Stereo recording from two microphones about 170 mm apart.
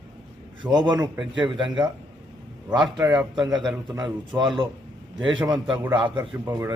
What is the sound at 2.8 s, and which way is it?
Speech, 5° right (ahead or behind).